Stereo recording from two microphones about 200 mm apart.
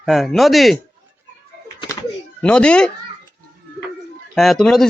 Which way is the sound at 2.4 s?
5° left (ahead or behind).